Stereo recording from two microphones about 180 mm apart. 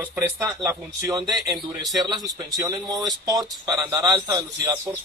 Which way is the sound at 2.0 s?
20° right (ahead or behind).